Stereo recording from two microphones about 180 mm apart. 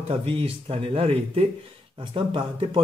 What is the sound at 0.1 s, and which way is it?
Speech, 30° right (ahead or behind).